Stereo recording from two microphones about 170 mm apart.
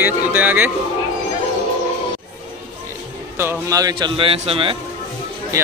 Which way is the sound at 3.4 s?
15° right (ahead or behind).